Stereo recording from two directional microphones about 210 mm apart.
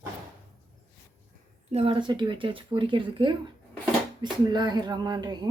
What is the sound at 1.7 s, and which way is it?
A woman's voice, 30° right (ahead or behind).